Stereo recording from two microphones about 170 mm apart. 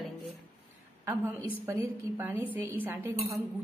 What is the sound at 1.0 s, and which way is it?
A woman's voice, 15° right (ahead or behind).